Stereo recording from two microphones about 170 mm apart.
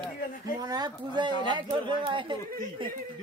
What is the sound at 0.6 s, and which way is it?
Speech, 25° right (ahead or behind).